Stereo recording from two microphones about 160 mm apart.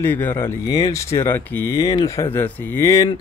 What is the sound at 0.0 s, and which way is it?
Speech, 15° left (ahead or behind).